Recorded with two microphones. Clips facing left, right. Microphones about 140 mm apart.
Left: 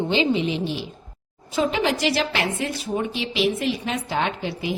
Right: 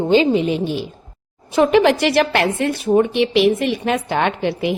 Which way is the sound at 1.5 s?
65° right (ahead or behind).